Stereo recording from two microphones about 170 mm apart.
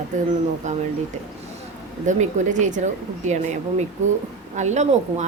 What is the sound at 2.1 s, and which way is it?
Speech, 45° right (ahead or behind).